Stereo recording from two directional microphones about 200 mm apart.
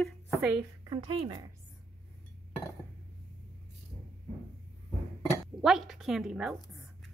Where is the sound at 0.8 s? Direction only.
25° right (ahead or behind).